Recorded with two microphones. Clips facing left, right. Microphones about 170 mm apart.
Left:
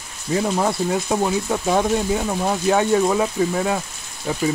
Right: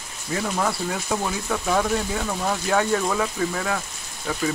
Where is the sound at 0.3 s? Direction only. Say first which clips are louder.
Left 5 dB; 25° left (ahead or behind).